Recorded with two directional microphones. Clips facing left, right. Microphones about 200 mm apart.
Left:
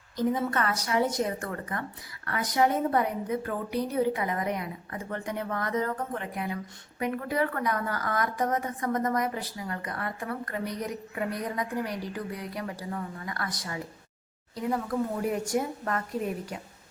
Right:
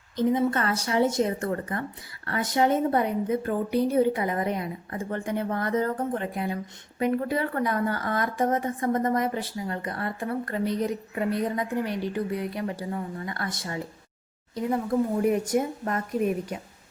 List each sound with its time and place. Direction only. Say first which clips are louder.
0.2 s a woman's voice: right 4 dB; 25° right (ahead or behind)